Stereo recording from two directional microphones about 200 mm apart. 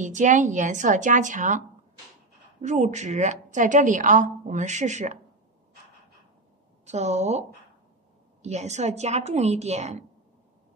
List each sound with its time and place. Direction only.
0.0 s a woman's voice: 40° right (ahead or behind)
2.6 s a woman's voice: 35° right (ahead or behind)
6.9 s a woman's voice: 35° right (ahead or behind)